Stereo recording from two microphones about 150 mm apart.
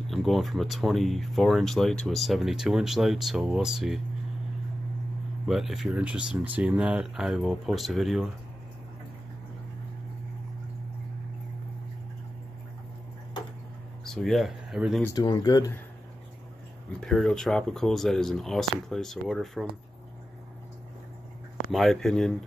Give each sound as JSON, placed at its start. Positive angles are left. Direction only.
{"t": 0.1, "sound": "speech", "side_deg": 0}
{"t": 5.5, "sound": "speech", "side_deg": 0}
{"t": 14.0, "sound": "speech", "side_deg": 5}
{"t": 15.1, "sound": "speech", "side_deg": 25}
{"t": 17.0, "sound": "speech", "side_deg": 0}
{"t": 21.7, "sound": "speech", "side_deg": 0}